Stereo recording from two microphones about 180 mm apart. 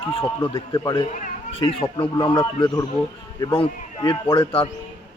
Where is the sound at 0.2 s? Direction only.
25° left (ahead or behind).